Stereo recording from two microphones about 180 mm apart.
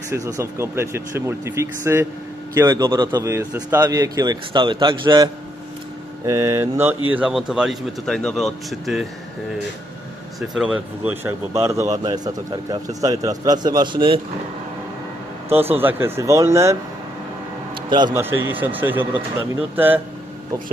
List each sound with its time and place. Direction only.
0.1 s a man's voice: 15° right (ahead or behind); by 9.0 s centre (ahead or behind)
10.5 s speech: 5° right (ahead or behind); by 14.2 s 25° right (ahead or behind)
15.4 s speech: 10° right (ahead or behind)
17.8 s a man's voice: 25° right (ahead or behind)
18.1 s speech: 10° right (ahead or behind)